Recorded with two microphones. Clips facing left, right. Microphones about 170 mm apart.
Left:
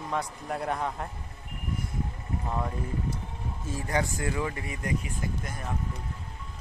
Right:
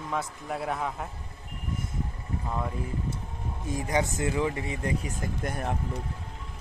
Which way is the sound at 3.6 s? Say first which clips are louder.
Right 2 dB; 20° right (ahead or behind).